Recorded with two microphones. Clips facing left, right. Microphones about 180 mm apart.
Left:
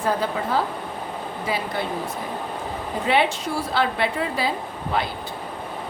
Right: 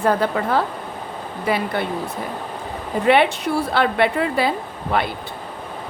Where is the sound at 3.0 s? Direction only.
60° right (ahead or behind).